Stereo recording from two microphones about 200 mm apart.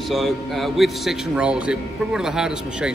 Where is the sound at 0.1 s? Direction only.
Centre (ahead or behind).